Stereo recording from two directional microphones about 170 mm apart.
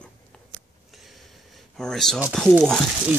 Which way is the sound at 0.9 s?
Centre (ahead or behind).